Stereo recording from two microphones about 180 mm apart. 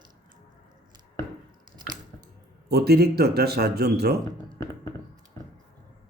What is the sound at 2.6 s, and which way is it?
Speech, 60° right (ahead or behind).